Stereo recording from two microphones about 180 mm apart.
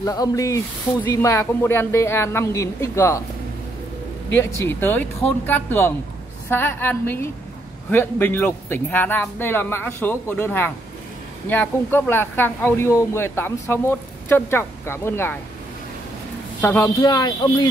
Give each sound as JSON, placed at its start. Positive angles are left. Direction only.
{"t": 0.0, "sound": "speech", "side_deg": 20}
{"t": 4.4, "sound": "speech", "side_deg": 15}
{"t": 16.6, "sound": "speech", "side_deg": 15}